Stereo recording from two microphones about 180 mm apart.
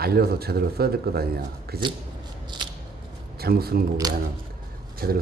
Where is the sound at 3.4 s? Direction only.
60° right (ahead or behind).